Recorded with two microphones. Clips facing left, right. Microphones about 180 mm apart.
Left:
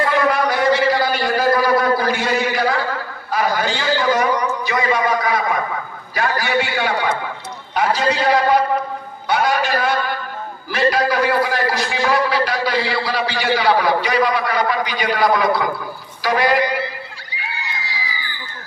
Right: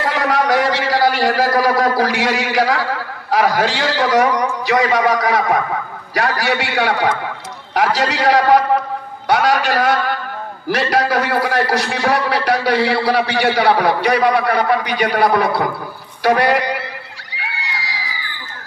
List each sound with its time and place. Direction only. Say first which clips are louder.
0.0 s a sound: even; 80° right
3.3 s a man's voice: right 4 dB; 85° right
7.7 s a man's voice: right 1 dB; 90° right; by 16.7 s 65° right (ahead or behind)